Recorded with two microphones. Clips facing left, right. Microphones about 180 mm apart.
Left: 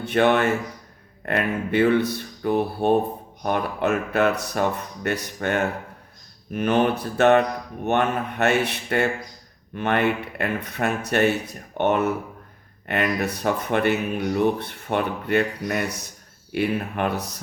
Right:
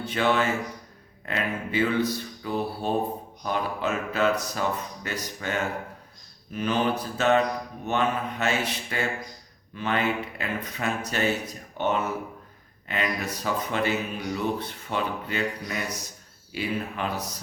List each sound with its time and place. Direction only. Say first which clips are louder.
0.0 s speech: left 5 dB; 60° left (ahead or behind)